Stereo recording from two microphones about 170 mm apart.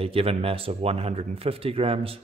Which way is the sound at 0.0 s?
35° right (ahead or behind).